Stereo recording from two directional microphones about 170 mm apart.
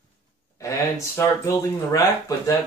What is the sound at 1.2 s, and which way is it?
Speech, 20° left (ahead or behind).